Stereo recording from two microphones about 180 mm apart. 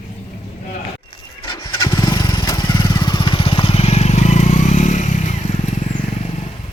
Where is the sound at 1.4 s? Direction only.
25° left (ahead or behind); by 6.4 s 40° left (ahead or behind).